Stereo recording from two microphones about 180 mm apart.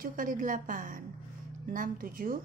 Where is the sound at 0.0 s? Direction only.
45° right (ahead or behind).